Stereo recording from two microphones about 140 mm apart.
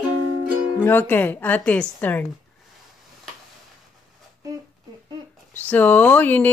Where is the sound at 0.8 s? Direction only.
15° left (ahead or behind).